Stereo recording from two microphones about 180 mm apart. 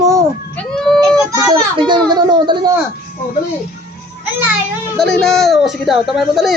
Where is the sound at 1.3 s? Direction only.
20° right (ahead or behind).